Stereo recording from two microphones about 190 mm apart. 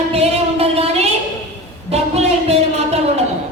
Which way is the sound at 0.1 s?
30° right (ahead or behind).